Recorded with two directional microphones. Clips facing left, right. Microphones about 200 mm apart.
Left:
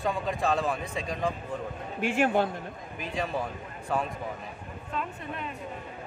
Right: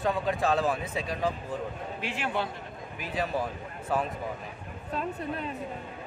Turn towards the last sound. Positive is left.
turn(degrees=-35)  # may be behind; listen again after turning